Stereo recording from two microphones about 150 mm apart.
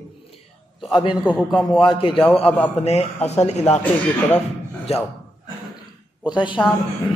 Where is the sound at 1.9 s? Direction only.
35° left (ahead or behind).